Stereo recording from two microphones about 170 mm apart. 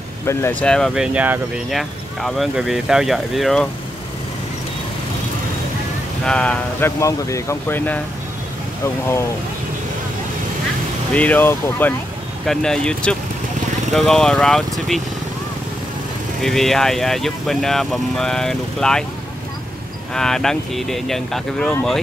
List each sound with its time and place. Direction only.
0.3 s speech: 10° left (ahead or behind)
6.2 s speech: 5° left (ahead or behind)
7.0 s speech: 20° left (ahead or behind)
11.1 s speech: 10° left (ahead or behind)
16.3 s speech: centre (ahead or behind)
20.2 s speech: 5° left (ahead or behind)